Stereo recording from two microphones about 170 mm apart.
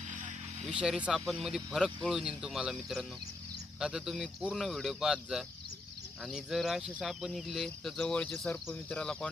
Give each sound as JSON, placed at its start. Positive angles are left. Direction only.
{"t": 0.1, "sound": "vehicle", "side_deg": -45}
{"t": 0.7, "sound": "speech", "side_deg": -5}